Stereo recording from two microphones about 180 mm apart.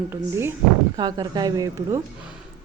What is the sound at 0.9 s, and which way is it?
A woman's voice, 25° right (ahead or behind).